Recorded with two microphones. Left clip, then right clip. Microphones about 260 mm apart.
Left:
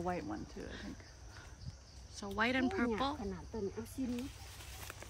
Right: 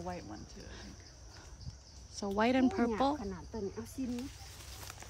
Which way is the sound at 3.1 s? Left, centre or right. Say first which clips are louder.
Right 2 dB; centre.